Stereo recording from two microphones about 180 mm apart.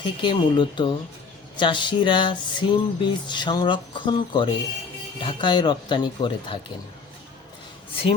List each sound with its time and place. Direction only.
0.0 s music: 25° left (ahead or behind)